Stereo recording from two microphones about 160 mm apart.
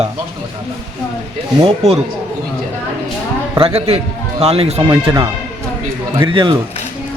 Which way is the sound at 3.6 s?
35° right (ahead or behind).